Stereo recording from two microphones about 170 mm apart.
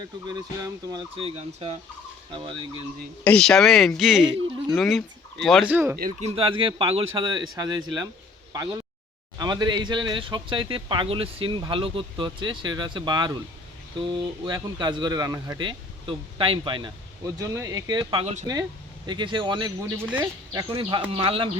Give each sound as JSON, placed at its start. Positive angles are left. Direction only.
{"t": 0.3, "sound": "fowl", "side_deg": -25}
{"t": 3.2, "sound": "speech", "side_deg": 5}
{"t": 5.7, "sound": "speech", "side_deg": -15}
{"t": 6.1, "sound": "speech", "side_deg": -35}
{"t": 19.8, "sound": "speech", "side_deg": -10}
{"t": 20.5, "sound": "speech", "side_deg": -25}
{"t": 21.1, "sound": "fowl", "side_deg": -35}